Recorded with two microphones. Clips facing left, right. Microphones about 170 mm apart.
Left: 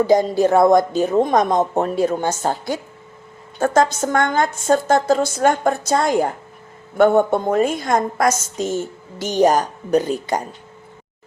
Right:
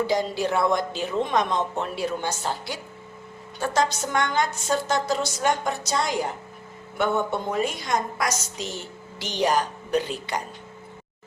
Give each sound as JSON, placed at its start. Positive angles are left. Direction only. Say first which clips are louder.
{"t": 0.1, "sound": "a woman's voice", "louder": "left 9 dB", "side_deg": 45}